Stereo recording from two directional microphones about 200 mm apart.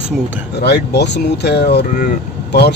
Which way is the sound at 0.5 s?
55° left (ahead or behind).